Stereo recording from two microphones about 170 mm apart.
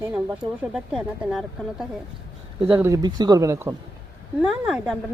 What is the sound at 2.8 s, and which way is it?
Speech, 15° right (ahead or behind).